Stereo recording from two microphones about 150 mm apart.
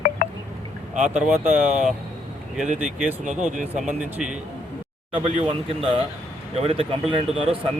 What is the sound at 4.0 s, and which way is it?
Speech, 5° right (ahead or behind).